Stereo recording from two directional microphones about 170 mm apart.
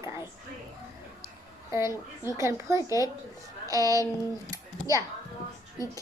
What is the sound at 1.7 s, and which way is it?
A woman's voice, 15° right (ahead or behind).